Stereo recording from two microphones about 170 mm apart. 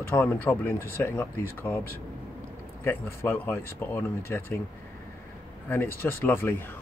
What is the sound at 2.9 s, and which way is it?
Speech, 15° left (ahead or behind).